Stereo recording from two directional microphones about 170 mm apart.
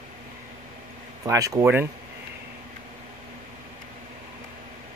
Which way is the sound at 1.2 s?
20° right (ahead or behind).